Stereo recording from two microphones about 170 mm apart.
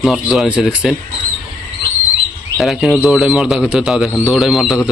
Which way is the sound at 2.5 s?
Centre (ahead or behind).